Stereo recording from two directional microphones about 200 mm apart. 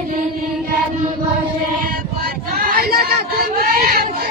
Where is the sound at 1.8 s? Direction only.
50° right (ahead or behind).